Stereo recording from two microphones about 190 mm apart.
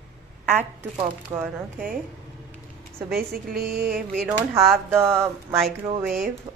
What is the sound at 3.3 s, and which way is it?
Speech, 50° right (ahead or behind).